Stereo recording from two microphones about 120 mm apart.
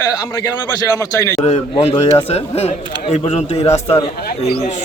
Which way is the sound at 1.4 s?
60° left (ahead or behind).